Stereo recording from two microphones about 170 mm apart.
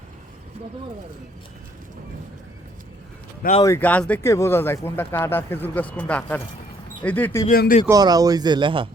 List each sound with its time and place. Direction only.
3.4 s speech: 60° left (ahead or behind)
3.8 s speech: 10° left (ahead or behind)
7.5 s speech: 60° left (ahead or behind)
7.9 s speech: 20° right (ahead or behind)